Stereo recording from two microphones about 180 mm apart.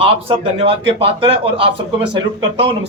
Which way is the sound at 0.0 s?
30° right (ahead or behind).